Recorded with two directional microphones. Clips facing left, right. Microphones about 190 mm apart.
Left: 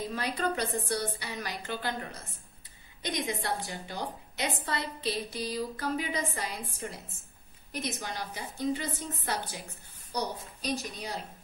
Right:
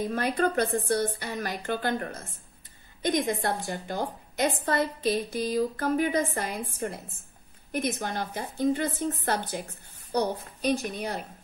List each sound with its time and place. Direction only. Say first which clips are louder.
0.1 s a woman's voice: right 6 dB; 50° right (ahead or behind)